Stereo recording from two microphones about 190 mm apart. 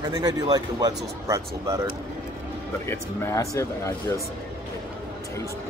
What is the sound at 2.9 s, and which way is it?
Speech, 15° left (ahead or behind).